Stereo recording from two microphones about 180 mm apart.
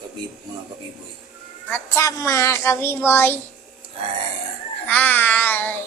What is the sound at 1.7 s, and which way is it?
A woman's voice, 15° left (ahead or behind).